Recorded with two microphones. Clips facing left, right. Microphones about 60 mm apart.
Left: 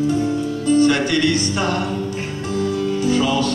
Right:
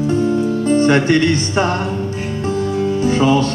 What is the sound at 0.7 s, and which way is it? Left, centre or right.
Speech, right.